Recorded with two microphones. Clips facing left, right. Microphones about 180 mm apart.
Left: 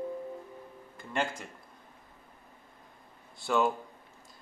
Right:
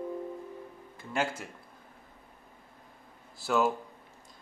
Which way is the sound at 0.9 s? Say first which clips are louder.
Right 1 dB; 5° right (ahead or behind).